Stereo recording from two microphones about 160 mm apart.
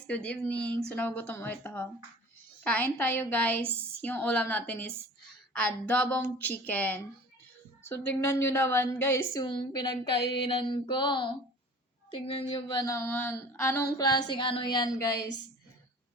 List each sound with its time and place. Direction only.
0.1 s a woman's voice: 10° left (ahead or behind); by 10.1 s 25° left (ahead or behind)
10.4 s mantra: 30° left (ahead or behind)
12.2 s a sound: 35° left (ahead or behind)